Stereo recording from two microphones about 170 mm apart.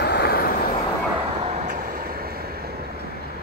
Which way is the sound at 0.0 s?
70° left (ahead or behind).